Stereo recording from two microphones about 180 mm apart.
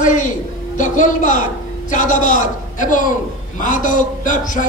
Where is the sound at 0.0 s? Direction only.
45° left (ahead or behind).